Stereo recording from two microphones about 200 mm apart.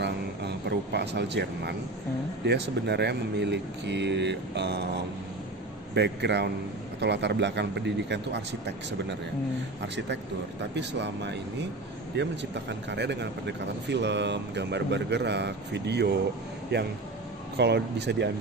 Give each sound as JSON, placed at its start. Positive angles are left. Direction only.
{"t": 0.0, "sound": "speech", "side_deg": -55}
{"t": 10.7, "sound": "speech", "side_deg": -60}